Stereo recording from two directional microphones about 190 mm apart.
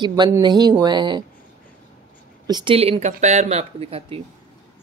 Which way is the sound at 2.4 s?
25° right (ahead or behind).